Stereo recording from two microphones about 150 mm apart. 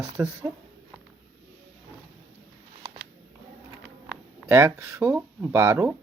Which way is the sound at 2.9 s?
30° right (ahead or behind).